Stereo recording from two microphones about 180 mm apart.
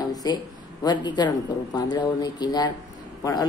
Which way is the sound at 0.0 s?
20° left (ahead or behind).